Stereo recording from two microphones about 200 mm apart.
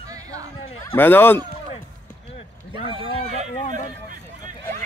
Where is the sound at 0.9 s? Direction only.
10° left (ahead or behind).